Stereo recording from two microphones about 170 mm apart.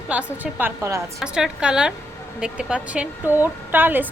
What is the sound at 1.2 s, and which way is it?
A woman's voice, 5° right (ahead or behind).